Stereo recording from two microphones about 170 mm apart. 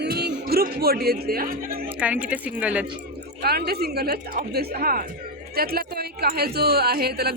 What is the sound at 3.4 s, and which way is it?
Speech, 65° right (ahead or behind).